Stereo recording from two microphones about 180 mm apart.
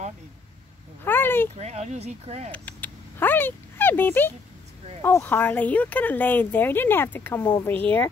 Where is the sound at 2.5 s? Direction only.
10° left (ahead or behind).